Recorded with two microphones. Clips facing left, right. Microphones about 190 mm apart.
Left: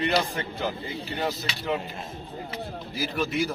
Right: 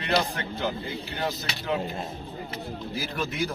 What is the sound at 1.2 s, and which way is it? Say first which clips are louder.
Speech: left 2 dB; 5° left (ahead or behind).